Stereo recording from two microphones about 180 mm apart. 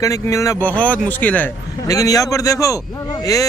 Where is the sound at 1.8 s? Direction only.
20° left (ahead or behind).